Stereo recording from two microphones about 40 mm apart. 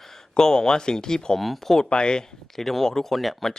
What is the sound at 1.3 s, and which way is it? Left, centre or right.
Speech, centre.